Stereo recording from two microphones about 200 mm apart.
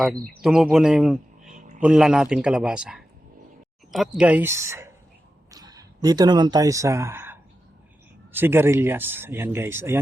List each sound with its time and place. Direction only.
0.4 s a man's voice: centre (ahead or behind)
1.5 s a sound: 40° right (ahead or behind)
1.8 s a man's voice: 5° right (ahead or behind)